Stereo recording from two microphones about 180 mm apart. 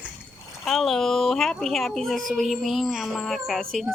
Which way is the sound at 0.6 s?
Centre (ahead or behind).